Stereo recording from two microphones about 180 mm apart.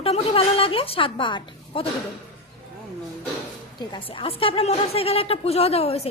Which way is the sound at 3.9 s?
30° left (ahead or behind).